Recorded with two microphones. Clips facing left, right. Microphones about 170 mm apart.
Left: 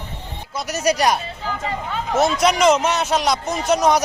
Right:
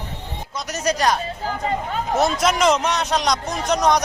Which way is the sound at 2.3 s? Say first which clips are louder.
Left 2 dB; centre (ahead or behind).